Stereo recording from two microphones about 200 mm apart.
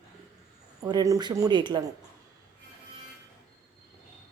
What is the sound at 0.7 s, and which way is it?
Speech, 20° right (ahead or behind).